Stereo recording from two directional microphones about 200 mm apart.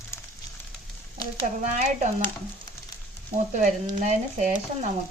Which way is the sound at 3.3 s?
40° right (ahead or behind).